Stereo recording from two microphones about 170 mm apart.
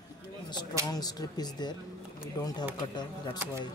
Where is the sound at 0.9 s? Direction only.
20° left (ahead or behind).